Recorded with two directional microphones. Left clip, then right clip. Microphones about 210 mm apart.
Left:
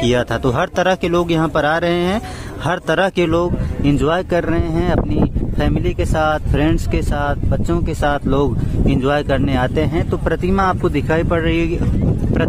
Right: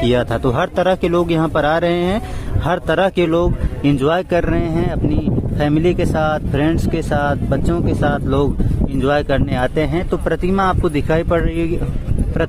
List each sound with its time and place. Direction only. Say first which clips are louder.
0.0 s speech: even; centre (ahead or behind)